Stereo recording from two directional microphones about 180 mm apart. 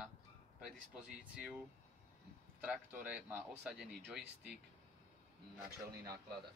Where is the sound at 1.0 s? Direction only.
5° right (ahead or behind).